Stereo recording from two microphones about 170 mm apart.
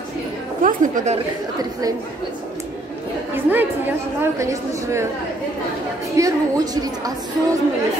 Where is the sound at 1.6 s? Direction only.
20° right (ahead or behind).